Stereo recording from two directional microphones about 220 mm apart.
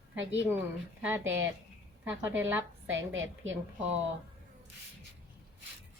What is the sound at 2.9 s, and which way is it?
Speech, 60° right (ahead or behind).